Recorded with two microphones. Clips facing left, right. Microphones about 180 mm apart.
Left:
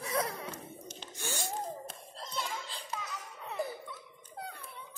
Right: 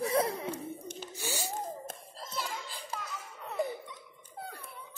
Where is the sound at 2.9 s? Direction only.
Centre (ahead or behind).